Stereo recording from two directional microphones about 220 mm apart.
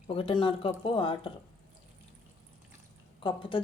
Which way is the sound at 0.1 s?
25° left (ahead or behind).